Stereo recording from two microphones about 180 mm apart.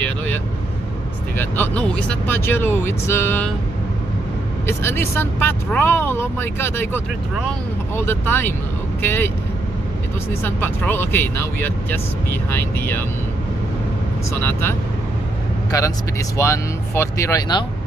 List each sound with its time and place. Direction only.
1.4 s speech: 10° left (ahead or behind)
4.6 s speech: 15° left (ahead or behind)
10.4 s speech: 10° left (ahead or behind)
14.4 s speech: 15° left (ahead or behind)